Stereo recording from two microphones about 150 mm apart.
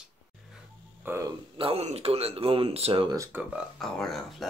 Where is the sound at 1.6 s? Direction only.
40° right (ahead or behind).